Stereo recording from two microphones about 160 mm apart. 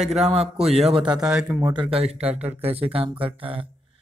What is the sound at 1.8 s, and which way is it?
A man's voice, 40° right (ahead or behind).